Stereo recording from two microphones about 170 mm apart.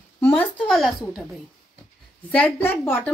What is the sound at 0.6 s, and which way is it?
Speech, centre (ahead or behind).